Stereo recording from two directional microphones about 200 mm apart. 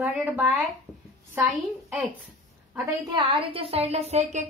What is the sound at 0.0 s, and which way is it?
A woman's voice, 5° right (ahead or behind).